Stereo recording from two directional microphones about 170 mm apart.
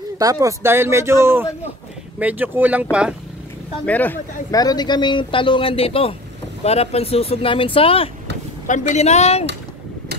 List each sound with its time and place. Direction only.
0.2 s speech: 20° right (ahead or behind)
3.8 s speech: 10° left (ahead or behind)
4.5 s speech: 20° left (ahead or behind)
8.6 s speech: 45° left (ahead or behind)